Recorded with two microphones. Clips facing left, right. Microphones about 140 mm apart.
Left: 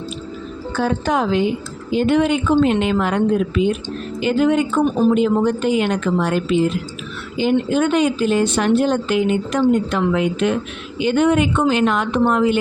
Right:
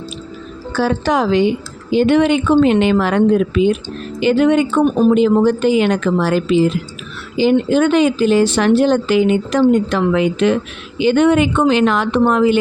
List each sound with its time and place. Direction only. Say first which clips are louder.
0.7 s speech: right 3 dB; 90° right